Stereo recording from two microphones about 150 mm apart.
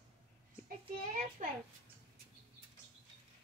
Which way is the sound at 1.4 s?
55° right (ahead or behind).